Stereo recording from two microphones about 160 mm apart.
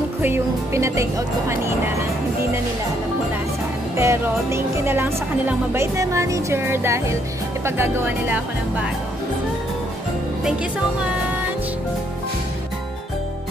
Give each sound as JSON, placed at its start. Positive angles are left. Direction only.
{"t": 0.2, "sound": "speech", "side_deg": -15}
{"t": 3.9, "sound": "speech", "side_deg": -15}